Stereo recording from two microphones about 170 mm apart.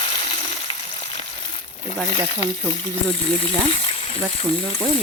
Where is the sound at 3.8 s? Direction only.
35° left (ahead or behind).